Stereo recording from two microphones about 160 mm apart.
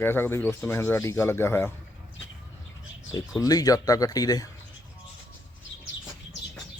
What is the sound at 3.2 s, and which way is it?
Speech, 25° left (ahead or behind).